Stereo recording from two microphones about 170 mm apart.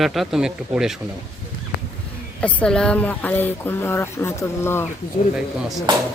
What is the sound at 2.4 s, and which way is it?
Speech, 5° left (ahead or behind).